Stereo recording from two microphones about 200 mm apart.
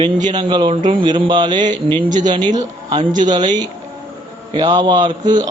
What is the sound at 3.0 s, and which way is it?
Speech, 40° right (ahead or behind).